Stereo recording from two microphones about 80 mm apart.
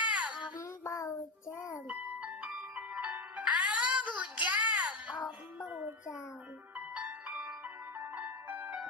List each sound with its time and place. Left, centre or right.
0.0 s child singing: centre
0.6 s child singing: left
1.9 s music: centre
6.7 s music: centre